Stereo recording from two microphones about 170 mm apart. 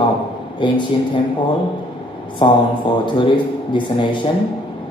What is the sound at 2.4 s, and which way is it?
Speech, 30° left (ahead or behind).